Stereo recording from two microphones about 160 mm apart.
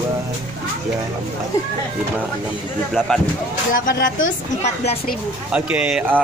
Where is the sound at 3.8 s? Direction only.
60° left (ahead or behind).